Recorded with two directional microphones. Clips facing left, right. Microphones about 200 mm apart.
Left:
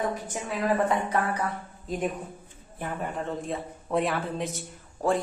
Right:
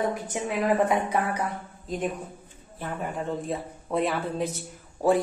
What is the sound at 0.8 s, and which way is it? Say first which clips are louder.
Speech: right 1 dB; 15° right (ahead or behind).